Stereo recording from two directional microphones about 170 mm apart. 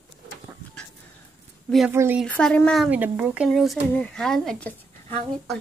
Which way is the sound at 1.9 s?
10° right (ahead or behind).